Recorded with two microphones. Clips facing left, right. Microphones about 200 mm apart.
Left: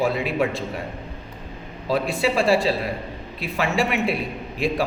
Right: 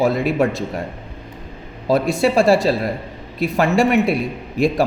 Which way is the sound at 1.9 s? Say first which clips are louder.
Right 5 dB; 40° right (ahead or behind).